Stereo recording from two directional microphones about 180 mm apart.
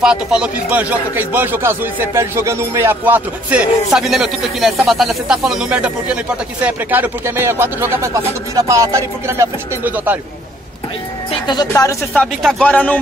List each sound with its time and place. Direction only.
0.0 s speech: 5° right (ahead or behind)
11.4 s a woman's voice: 20° left (ahead or behind)
12.1 s speech: centre (ahead or behind)